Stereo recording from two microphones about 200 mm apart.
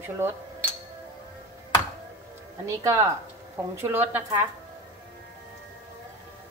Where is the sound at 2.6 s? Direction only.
15° right (ahead or behind).